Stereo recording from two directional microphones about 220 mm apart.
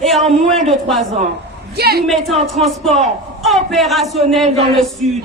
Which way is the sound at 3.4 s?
Centre (ahead or behind).